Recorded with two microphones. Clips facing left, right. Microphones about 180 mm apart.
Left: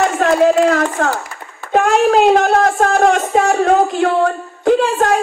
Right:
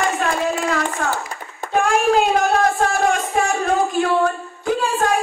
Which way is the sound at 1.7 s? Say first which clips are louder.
Left 4 dB; 65° left (ahead or behind).